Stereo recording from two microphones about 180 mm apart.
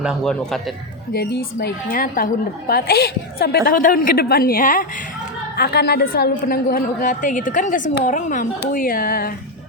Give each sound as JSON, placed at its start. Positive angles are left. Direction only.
{"t": 0.0, "sound": "speech", "side_deg": 0}
{"t": 1.1, "sound": "a woman's voice", "side_deg": 65}
{"t": 5.5, "sound": "a woman's voice", "side_deg": 60}